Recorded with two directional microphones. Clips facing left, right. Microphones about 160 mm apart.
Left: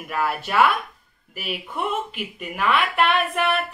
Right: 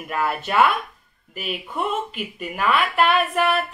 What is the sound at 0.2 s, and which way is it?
Speech, 5° left (ahead or behind).